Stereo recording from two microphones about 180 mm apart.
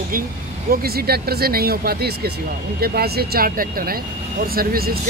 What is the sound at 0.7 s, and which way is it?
Speech, 60° right (ahead or behind).